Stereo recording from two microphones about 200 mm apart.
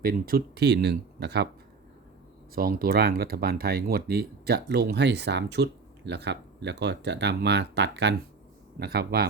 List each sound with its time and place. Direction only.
0.0 s speech: 45° right (ahead or behind)
2.6 s speech: 45° right (ahead or behind)